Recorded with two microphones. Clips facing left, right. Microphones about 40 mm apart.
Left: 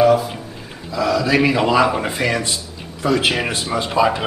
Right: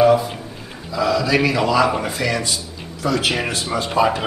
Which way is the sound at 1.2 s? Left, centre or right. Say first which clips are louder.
Left 2 dB; centre.